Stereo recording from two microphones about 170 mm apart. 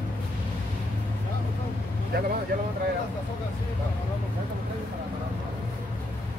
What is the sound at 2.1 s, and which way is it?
Speech, 60° right (ahead or behind).